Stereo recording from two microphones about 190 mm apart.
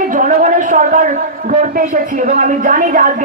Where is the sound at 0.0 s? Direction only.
45° right (ahead or behind).